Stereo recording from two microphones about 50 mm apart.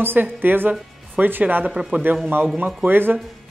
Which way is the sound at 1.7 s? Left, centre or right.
Centre.